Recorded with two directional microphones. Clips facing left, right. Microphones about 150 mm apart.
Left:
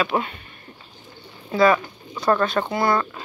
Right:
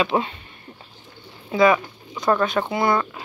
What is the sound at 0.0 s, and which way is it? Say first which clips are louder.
Speech: right 2 dB; 25° right (ahead or behind).